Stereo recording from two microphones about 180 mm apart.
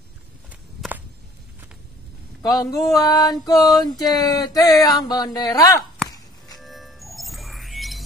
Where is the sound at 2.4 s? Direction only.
20° left (ahead or behind).